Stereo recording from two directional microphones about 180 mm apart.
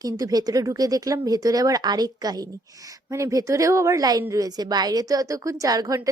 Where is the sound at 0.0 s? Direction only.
20° right (ahead or behind).